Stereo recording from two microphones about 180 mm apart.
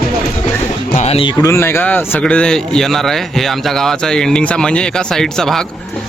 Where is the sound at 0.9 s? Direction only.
35° left (ahead or behind).